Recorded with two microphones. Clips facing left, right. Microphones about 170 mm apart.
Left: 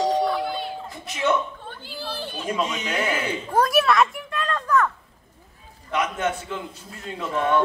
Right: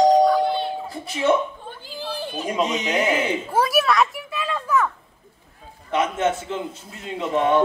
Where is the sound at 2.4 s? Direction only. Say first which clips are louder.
Right 3 dB; 20° right (ahead or behind).